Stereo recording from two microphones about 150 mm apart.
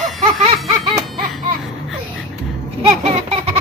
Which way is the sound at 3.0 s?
45° right (ahead or behind).